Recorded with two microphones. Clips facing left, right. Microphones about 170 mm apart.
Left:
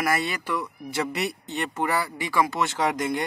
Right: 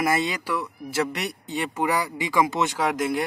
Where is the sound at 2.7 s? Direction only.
5° right (ahead or behind).